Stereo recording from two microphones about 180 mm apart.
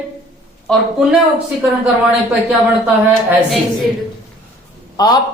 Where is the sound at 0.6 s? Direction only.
Centre (ahead or behind).